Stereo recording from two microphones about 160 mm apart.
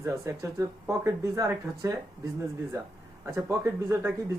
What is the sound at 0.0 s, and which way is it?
Speech, 15° right (ahead or behind).